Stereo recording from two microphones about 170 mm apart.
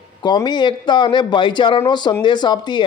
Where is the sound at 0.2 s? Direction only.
25° left (ahead or behind).